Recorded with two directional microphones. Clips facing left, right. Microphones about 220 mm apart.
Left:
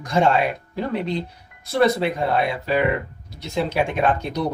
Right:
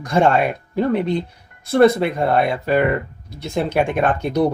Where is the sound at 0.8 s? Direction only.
55° right (ahead or behind).